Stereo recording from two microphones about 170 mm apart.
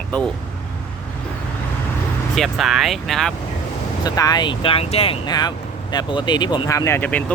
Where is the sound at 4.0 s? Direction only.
25° left (ahead or behind).